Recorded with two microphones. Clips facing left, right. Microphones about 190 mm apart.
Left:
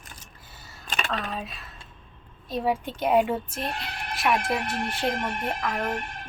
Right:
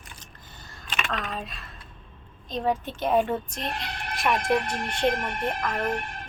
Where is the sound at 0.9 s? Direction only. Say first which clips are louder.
Left 1 dB; 35° left (ahead or behind).